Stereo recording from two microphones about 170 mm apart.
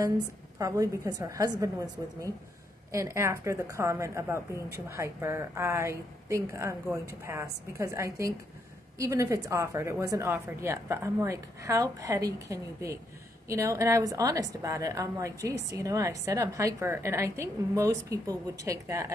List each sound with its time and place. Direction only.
0.6 s a woman's voice: 20° right (ahead or behind)
2.9 s a woman's voice: 20° right (ahead or behind)